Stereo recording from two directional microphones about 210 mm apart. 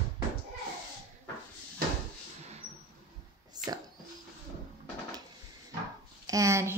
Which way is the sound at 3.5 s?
20° right (ahead or behind).